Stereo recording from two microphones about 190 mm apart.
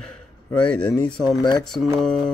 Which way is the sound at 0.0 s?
5° left (ahead or behind).